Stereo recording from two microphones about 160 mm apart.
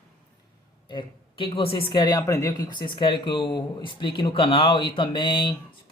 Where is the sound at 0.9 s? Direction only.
30° left (ahead or behind).